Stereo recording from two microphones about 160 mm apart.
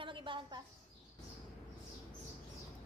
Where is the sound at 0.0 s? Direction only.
30° right (ahead or behind).